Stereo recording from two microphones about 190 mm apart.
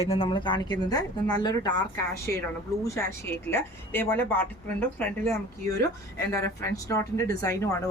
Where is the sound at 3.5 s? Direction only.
10° left (ahead or behind).